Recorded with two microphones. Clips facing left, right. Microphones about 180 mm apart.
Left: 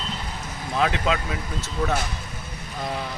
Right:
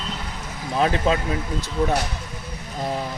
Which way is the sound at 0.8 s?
35° right (ahead or behind).